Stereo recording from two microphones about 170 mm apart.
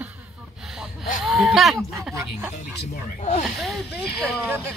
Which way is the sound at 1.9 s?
15° right (ahead or behind).